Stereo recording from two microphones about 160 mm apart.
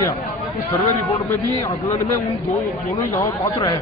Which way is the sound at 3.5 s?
30° left (ahead or behind).